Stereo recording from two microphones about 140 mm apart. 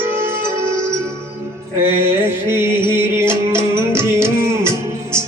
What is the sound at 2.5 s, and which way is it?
Music, 20° right (ahead or behind).